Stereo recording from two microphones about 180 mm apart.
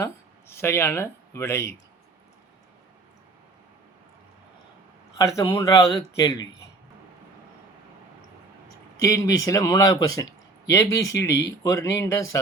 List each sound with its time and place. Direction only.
0.5 s speech: 15° left (ahead or behind)
5.1 s a man's voice: 20° left (ahead or behind)
9.0 s a man's voice: 15° left (ahead or behind)